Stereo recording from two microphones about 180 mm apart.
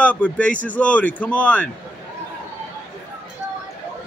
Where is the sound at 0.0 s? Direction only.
10° left (ahead or behind).